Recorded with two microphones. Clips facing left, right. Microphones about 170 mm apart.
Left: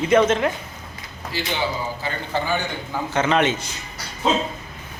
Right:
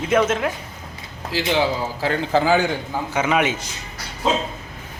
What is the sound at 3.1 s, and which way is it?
Speech, 10° right (ahead or behind).